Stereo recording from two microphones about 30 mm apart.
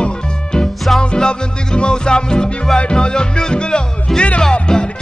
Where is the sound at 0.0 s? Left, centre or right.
Left.